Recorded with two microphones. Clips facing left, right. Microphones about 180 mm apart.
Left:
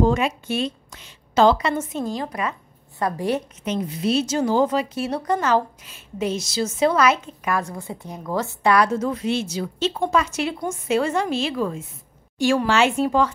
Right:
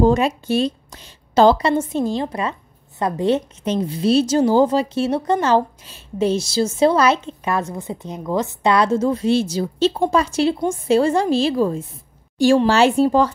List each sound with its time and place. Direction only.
0.0 s a woman's voice: 35° right (ahead or behind)